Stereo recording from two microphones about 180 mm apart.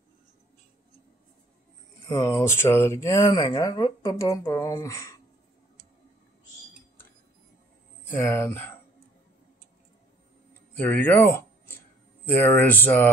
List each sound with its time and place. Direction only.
2.0 s speech: 20° left (ahead or behind)
8.1 s speech: 10° left (ahead or behind)
10.7 s speech: 10° left (ahead or behind)